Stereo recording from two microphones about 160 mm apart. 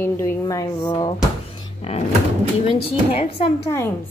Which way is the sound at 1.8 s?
40° left (ahead or behind).